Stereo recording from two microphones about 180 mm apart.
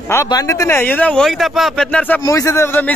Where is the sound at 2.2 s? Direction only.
20° left (ahead or behind).